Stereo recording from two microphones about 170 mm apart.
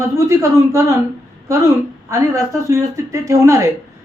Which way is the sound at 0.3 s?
15° right (ahead or behind).